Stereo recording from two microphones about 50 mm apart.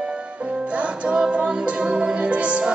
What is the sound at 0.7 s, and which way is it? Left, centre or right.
Music, right.